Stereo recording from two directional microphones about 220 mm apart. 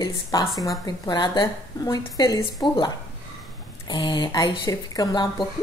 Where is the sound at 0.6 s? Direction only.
15° left (ahead or behind).